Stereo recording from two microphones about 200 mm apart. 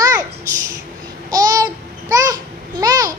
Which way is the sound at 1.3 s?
15° right (ahead or behind).